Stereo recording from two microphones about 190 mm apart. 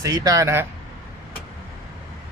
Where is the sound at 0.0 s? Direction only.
20° right (ahead or behind).